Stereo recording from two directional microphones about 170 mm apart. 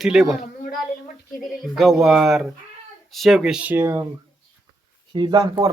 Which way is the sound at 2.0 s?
Centre (ahead or behind).